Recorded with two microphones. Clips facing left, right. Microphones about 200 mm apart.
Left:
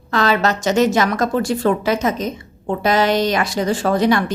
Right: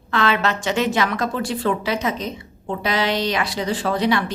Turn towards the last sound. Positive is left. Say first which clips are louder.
# left 4 dB
turn(degrees=45)  # may be behind; listen again after turning